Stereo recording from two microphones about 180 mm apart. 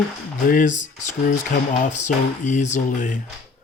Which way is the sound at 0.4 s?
50° left (ahead or behind).